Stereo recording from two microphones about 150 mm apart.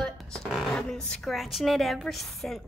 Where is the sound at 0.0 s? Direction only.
5° left (ahead or behind).